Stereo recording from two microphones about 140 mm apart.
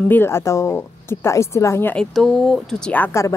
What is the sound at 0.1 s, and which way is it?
Speech, 15° left (ahead or behind).